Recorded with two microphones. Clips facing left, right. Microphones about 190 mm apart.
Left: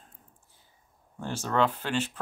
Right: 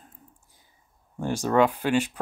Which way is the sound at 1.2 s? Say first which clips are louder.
Right 6 dB; 10° right (ahead or behind).